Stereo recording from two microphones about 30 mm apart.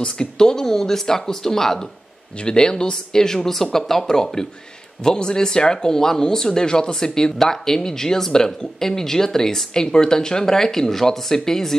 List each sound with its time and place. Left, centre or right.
0.0 s speech: left
2.4 s speech: left
5.0 s speech: left